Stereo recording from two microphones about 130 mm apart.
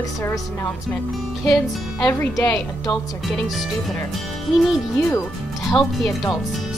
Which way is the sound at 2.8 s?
30° left (ahead or behind).